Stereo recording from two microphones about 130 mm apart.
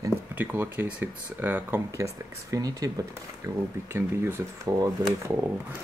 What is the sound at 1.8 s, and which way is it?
Speech, 25° right (ahead or behind).